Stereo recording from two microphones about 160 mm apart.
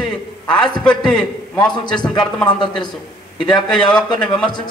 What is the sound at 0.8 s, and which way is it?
Speech, 5° left (ahead or behind).